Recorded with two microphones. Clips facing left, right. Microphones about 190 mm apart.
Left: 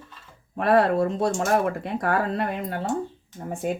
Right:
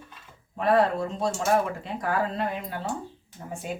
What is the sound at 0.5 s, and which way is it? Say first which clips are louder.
Speech: left 3 dB; 65° left (ahead or behind).